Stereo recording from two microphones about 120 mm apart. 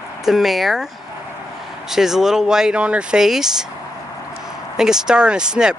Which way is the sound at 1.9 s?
5° right (ahead or behind).